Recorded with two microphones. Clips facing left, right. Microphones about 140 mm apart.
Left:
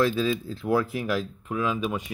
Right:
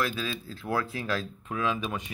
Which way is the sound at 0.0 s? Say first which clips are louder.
Left 8 dB; 25° left (ahead or behind).